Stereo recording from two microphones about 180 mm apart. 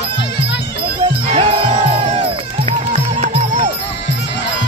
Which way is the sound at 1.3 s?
30° right (ahead or behind).